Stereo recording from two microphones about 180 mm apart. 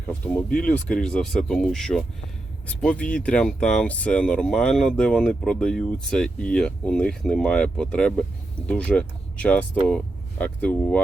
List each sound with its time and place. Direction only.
0.3 s speech: 5° left (ahead or behind)